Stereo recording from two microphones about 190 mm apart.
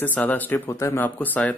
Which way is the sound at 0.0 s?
10° left (ahead or behind).